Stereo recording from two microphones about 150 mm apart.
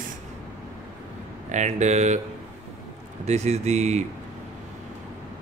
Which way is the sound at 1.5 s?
50° right (ahead or behind).